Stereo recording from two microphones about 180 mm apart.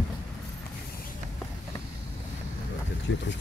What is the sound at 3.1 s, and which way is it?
Speech, 90° left.